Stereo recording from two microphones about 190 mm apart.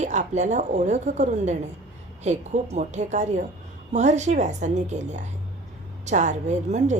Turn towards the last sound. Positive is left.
turn(degrees=-35)  # may be behind; listen again after turning